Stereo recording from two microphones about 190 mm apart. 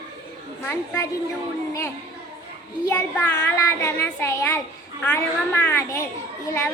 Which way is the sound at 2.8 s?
10° left (ahead or behind).